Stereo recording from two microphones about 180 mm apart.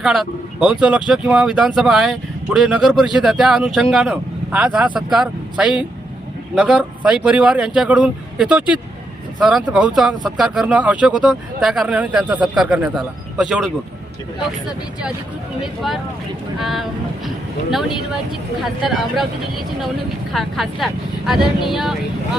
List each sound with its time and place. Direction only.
0.0 s speech: centre (ahead or behind)
15.6 s speech: centre (ahead or behind)
20.3 s speech: centre (ahead or behind)